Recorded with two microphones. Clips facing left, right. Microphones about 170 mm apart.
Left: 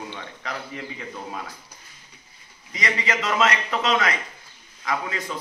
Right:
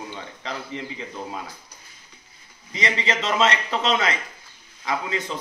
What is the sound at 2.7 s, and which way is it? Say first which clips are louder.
A man's voice: right 1 dB; 25° right (ahead or behind).